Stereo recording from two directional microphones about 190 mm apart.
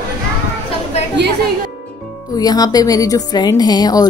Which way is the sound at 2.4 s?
20° left (ahead or behind).